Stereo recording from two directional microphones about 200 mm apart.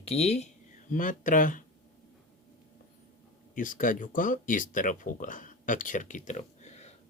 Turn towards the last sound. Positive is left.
turn(degrees=35)  # may be behind; listen again after turning